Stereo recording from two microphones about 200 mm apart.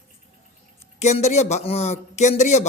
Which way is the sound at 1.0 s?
35° left (ahead or behind).